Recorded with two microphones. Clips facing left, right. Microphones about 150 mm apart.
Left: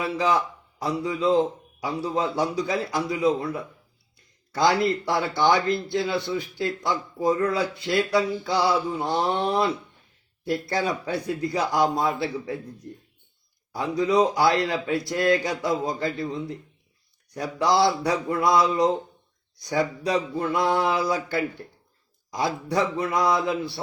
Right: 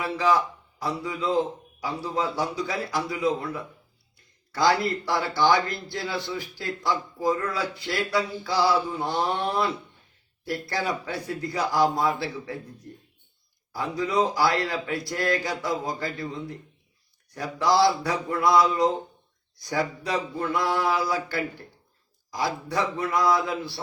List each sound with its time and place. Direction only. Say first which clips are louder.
0.8 s speech: left 4 dB; 25° left (ahead or behind)
13.7 s speech: left 4 dB; 25° left (ahead or behind)
17.3 s speech: even; 20° left (ahead or behind)